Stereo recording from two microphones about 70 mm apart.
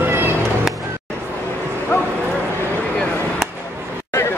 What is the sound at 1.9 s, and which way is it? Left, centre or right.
Bow-wow, left.